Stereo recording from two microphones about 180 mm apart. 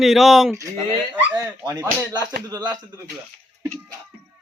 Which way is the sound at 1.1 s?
10° right (ahead or behind).